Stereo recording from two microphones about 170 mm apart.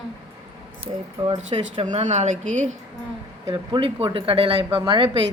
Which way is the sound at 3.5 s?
30° right (ahead or behind).